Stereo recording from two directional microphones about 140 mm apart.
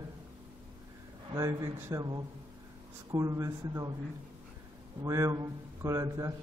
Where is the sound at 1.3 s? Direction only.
25° right (ahead or behind).